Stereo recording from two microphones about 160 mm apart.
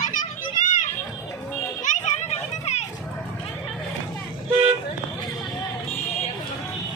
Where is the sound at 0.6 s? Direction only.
50° left (ahead or behind).